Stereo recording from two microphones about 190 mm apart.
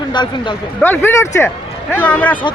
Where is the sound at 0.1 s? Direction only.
25° left (ahead or behind).